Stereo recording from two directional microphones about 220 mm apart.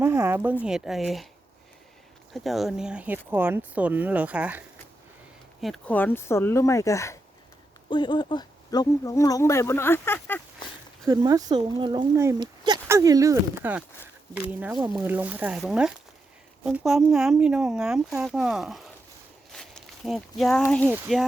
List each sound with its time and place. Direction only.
0.0 s speech: 10° right (ahead or behind)
2.3 s speech: centre (ahead or behind)
11.0 s speech: 15° right (ahead or behind); by 18.9 s centre (ahead or behind)
19.5 s a sound: centre (ahead or behind)
20.7 s speech: 5° left (ahead or behind)